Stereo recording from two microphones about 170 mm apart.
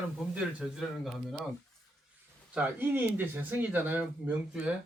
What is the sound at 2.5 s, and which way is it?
Speech, 10° right (ahead or behind).